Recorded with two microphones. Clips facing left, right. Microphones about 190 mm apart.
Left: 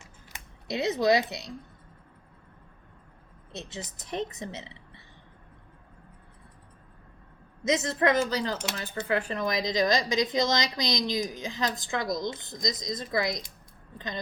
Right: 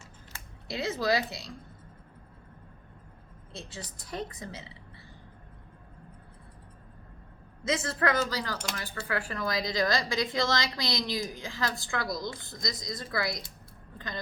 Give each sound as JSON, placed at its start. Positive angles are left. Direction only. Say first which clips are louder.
{"t": 0.0, "sound": "typing", "louder": "even", "side_deg": 20}
{"t": 3.5, "sound": "speech", "louder": "left 4 dB", "side_deg": 20}
{"t": 7.6, "sound": "speech", "louder": "left 4 dB", "side_deg": 20}